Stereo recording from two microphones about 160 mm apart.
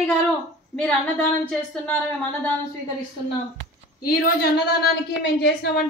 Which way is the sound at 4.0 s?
80° left.